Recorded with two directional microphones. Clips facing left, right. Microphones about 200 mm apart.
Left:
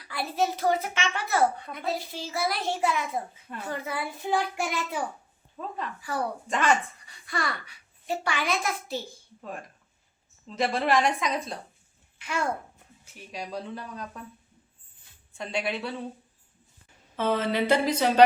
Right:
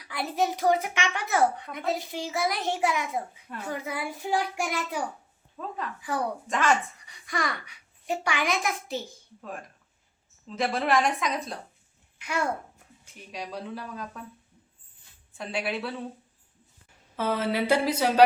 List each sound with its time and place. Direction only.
0.0 s a child's voice: 15° right (ahead or behind); by 5.9 s centre (ahead or behind)
6.0 s speech: 20° right (ahead or behind)
6.5 s a woman's voice: centre (ahead or behind)
7.1 s a child's voice: 15° right (ahead or behind)
9.4 s a woman's voice: centre (ahead or behind)
12.2 s a child's voice: 10° right (ahead or behind)
13.1 s a woman's voice: centre (ahead or behind)
15.4 s a woman's voice: 5° right (ahead or behind)
17.2 s a child's voice: 10° right (ahead or behind)